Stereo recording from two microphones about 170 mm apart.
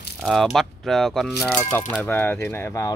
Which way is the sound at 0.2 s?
Centre (ahead or behind).